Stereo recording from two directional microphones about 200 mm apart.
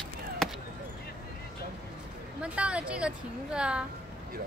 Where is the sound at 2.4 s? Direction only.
5° right (ahead or behind).